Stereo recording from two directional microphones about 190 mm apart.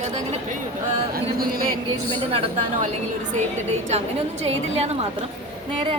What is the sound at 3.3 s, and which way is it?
A woman's voice, 35° right (ahead or behind).